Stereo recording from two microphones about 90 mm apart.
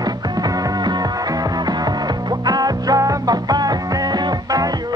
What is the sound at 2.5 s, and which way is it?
Music, 45° right (ahead or behind).